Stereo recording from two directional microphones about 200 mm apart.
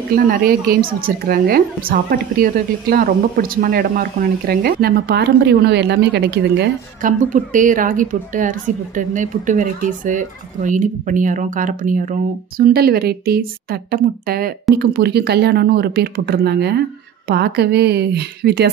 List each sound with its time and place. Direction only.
0.1 s a woman's voice: 50° right (ahead or behind)
7.0 s a woman's voice: 40° right (ahead or behind)